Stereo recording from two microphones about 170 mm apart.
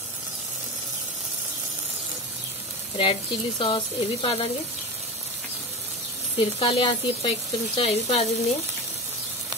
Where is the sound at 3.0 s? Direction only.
30° left (ahead or behind).